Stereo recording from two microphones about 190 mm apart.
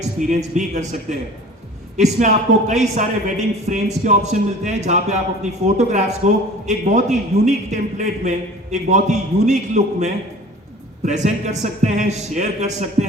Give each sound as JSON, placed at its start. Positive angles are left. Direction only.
{"t": 0.2, "sound": "a man's voice", "side_deg": -40}